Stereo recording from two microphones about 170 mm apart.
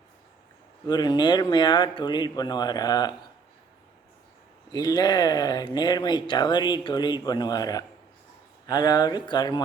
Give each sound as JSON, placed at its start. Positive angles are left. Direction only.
{"t": 0.9, "sound": "speech", "side_deg": 25}
{"t": 4.7, "sound": "speech", "side_deg": 20}